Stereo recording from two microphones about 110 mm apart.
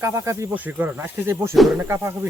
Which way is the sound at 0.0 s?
25° right (ahead or behind).